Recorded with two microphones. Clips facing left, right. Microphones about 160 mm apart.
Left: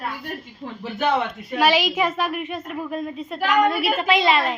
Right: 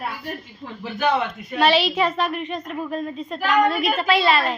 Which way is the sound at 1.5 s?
10° left (ahead or behind).